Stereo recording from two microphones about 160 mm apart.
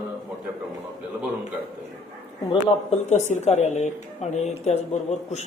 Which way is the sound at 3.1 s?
45° left (ahead or behind).